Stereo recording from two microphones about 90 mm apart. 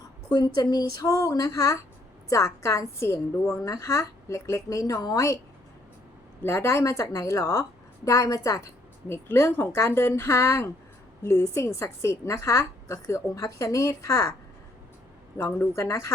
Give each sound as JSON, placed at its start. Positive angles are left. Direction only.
{"t": 0.3, "sound": "a woman's voice", "side_deg": 50}
{"t": 6.4, "sound": "a woman's voice", "side_deg": 30}
{"t": 15.4, "sound": "a woman's voice", "side_deg": 30}